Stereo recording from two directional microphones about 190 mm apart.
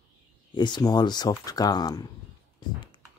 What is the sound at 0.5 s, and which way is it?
Speech, 25° left (ahead or behind).